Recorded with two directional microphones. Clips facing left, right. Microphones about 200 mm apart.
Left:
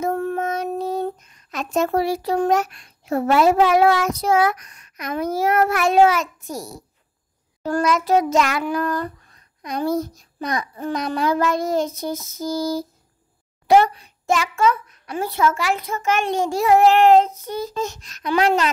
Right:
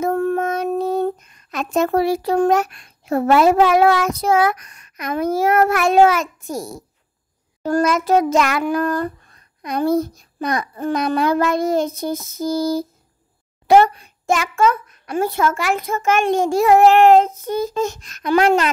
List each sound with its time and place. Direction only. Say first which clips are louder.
0.0 s child singing: right 4 dB; 50° right (ahead or behind)
13.7 s a child's voice: right 2 dB; 50° right (ahead or behind)